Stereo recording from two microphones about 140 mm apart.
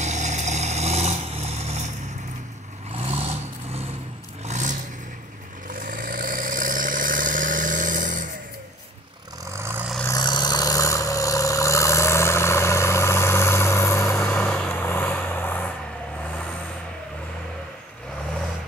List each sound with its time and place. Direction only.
0.0 s vehicle: 55° right (ahead or behind)
2.9 s vehicle: 45° right (ahead or behind)
4.5 s vehicle: 60° right (ahead or behind)
5.7 s vehicle: 75° right (ahead or behind)
10.0 s vehicle: 30° left (ahead or behind); by 15.6 s 15° left (ahead or behind)